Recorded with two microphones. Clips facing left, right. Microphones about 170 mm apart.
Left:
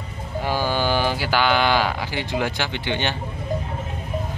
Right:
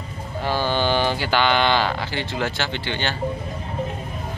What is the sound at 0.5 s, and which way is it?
Speech, 10° left (ahead or behind).